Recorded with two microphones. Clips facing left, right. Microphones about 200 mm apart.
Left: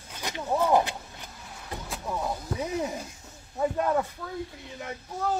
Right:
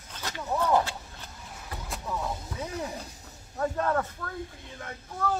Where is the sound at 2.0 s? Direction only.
15° left (ahead or behind).